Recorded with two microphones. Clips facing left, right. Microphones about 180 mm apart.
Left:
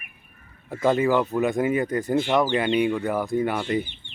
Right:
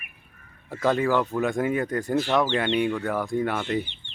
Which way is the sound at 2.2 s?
20° left (ahead or behind).